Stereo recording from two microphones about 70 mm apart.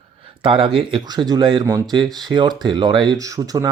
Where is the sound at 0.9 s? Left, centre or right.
Right.